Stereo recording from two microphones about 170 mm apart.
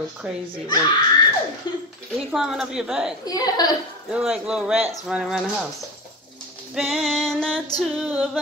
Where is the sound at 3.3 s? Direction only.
20° left (ahead or behind).